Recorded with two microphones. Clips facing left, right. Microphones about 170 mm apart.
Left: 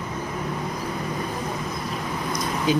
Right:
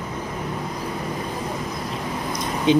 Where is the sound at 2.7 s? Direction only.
25° right (ahead or behind).